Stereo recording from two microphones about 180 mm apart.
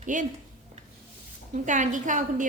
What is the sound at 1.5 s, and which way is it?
Speech, 45° right (ahead or behind).